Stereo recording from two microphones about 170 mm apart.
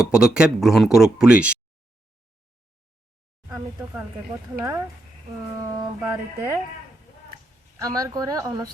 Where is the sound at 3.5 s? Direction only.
15° right (ahead or behind).